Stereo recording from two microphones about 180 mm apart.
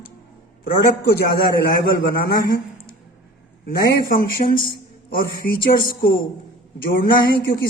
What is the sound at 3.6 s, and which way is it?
Speech, 60° left (ahead or behind).